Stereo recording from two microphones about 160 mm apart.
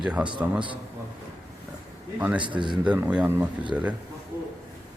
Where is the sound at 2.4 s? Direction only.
30° right (ahead or behind).